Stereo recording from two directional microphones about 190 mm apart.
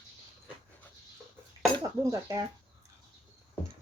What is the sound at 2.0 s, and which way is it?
Speech, 15° right (ahead or behind).